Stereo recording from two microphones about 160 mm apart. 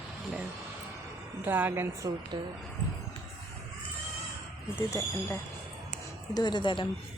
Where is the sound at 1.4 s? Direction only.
10° right (ahead or behind).